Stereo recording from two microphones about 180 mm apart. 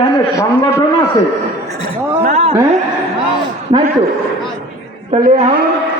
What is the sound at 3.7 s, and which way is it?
Speech, 25° right (ahead or behind).